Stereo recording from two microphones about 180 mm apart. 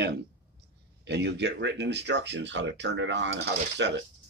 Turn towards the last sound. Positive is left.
turn(degrees=-75)  # may be behind; listen again after turning